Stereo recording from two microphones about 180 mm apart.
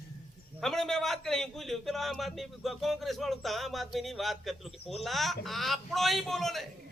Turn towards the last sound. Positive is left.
turn(degrees=0)  # may be behind; listen again after turning